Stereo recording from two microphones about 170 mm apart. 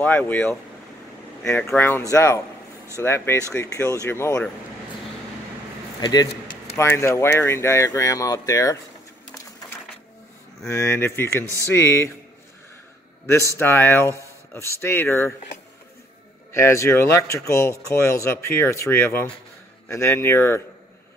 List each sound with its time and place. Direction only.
0.0 s speech: 10° left (ahead or behind)
5.9 s speech: 25° left (ahead or behind)
9.4 s printer: 20° left (ahead or behind)
10.7 s speech: 15° left (ahead or behind)
13.3 s speech: 15° left (ahead or behind)
16.5 s speech: 15° left (ahead or behind)